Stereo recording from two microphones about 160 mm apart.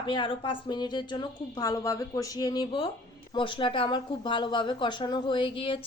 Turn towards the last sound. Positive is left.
turn(degrees=35)  # may be behind; listen again after turning